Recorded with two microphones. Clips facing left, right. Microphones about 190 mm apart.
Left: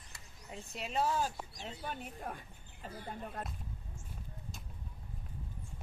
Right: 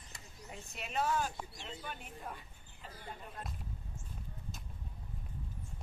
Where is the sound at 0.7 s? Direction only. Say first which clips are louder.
Left 1 dB; 30° left (ahead or behind).